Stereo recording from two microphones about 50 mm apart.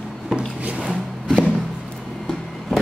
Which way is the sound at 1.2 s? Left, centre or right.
Centre.